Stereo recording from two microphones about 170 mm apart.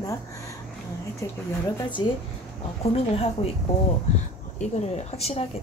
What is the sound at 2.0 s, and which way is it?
Speech, 25° left (ahead or behind).